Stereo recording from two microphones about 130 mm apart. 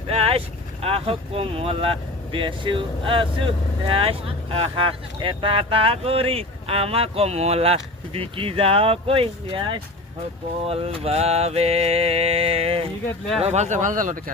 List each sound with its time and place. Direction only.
0.1 s speech: 50° right (ahead or behind)
13.4 s speech: 60° right (ahead or behind); by 14.2 s 85° right